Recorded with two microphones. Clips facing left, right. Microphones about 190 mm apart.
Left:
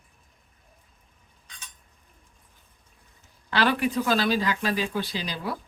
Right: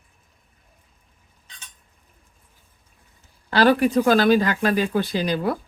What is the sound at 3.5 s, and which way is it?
Speech, 40° right (ahead or behind).